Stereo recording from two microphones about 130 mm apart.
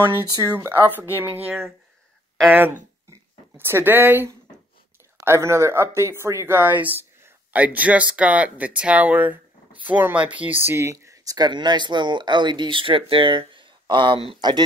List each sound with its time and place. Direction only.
0.3 s speech: 25° right (ahead or behind)
3.1 s speech: 20° right (ahead or behind); by 14.6 s 40° right (ahead or behind)